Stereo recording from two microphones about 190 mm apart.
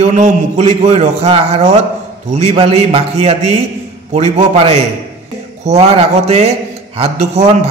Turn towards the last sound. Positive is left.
turn(degrees=-30)  # may be behind; listen again after turning